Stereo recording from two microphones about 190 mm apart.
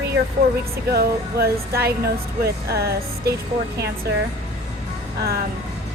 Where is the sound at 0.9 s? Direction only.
55° right (ahead or behind).